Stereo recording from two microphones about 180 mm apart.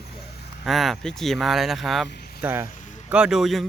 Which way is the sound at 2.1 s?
60° left (ahead or behind).